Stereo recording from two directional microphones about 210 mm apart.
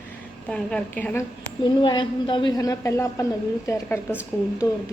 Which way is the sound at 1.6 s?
20° left (ahead or behind).